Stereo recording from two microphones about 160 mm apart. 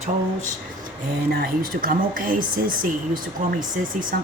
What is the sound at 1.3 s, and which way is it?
Speech, 65° right (ahead or behind).